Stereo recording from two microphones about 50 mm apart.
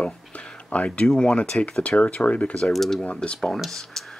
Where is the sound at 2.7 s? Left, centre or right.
Centre.